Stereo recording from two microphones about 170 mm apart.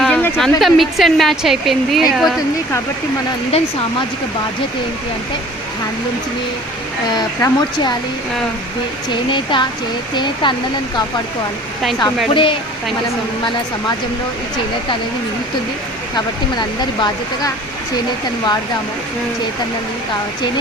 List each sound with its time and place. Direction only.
0.0 s a sound: 5° left (ahead or behind)
0.6 s a woman's voice: centre (ahead or behind)
3.5 s speech: 35° left (ahead or behind)
7.2 s speech: 25° left (ahead or behind)
9.0 s speech: 30° left (ahead or behind)
12.3 s speech: 30° left (ahead or behind)
16.1 s speech: 25° left (ahead or behind)